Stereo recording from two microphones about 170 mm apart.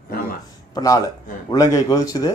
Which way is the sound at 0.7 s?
20° left (ahead or behind).